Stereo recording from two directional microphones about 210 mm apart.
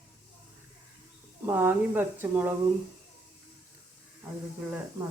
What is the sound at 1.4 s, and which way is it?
Speech, 10° right (ahead or behind).